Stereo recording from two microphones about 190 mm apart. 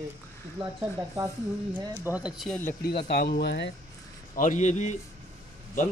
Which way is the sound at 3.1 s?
60° left (ahead or behind).